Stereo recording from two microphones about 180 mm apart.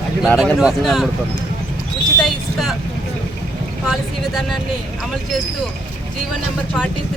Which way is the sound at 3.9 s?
Centre (ahead or behind).